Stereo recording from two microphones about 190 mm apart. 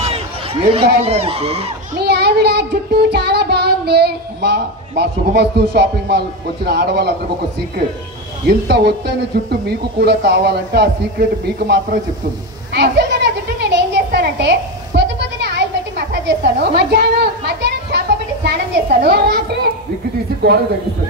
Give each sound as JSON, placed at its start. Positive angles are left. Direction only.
{"t": 0.7, "sound": "speech", "side_deg": -30}
{"t": 2.0, "sound": "a sound", "side_deg": -60}
{"t": 3.1, "sound": "child singing", "side_deg": -60}
{"t": 8.5, "sound": "child singing", "side_deg": -60}
{"t": 12.7, "sound": "a sound", "side_deg": -60}
{"t": 16.3, "sound": "a woman's voice", "side_deg": -60}